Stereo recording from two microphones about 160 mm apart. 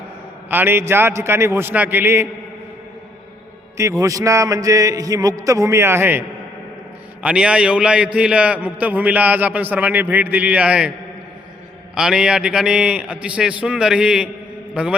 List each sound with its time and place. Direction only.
0.5 s a man's voice: 15° right (ahead or behind)
3.8 s a man's voice: 20° right (ahead or behind)
11.9 s a man's voice: 5° right (ahead or behind)
14.7 s mantra: 5° right (ahead or behind)